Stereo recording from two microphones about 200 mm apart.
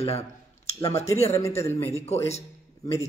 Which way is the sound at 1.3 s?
15° left (ahead or behind).